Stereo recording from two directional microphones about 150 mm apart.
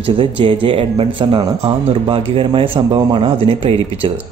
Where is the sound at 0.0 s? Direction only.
35° right (ahead or behind).